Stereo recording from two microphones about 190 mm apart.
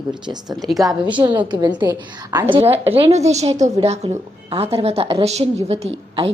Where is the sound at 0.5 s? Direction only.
Centre (ahead or behind).